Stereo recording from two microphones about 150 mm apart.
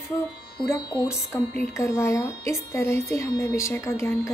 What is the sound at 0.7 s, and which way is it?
Speech, 20° left (ahead or behind).